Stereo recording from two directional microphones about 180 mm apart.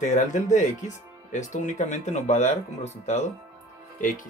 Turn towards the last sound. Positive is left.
turn(degrees=50)  # may be behind; listen again after turning